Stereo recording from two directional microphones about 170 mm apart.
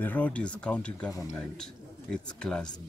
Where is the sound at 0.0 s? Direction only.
10° left (ahead or behind).